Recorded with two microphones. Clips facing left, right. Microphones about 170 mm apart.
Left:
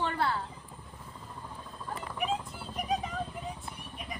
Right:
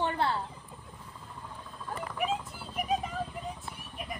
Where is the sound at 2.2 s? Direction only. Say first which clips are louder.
Even; centre (ahead or behind).